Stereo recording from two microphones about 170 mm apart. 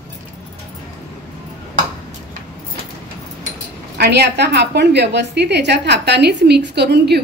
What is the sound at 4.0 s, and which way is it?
A woman's voice, 85° right.